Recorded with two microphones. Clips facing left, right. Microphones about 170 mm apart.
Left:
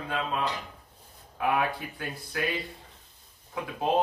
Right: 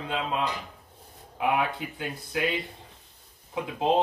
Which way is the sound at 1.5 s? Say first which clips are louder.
Even; 20° right (ahead or behind).